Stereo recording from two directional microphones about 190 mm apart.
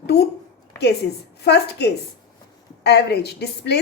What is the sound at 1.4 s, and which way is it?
A woman's voice, 60° left (ahead or behind).